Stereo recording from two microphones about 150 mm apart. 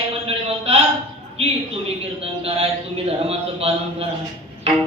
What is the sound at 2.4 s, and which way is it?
Mantra, 40° right (ahead or behind).